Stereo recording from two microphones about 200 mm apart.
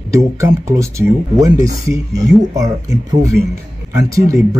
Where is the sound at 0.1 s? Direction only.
15° right (ahead or behind).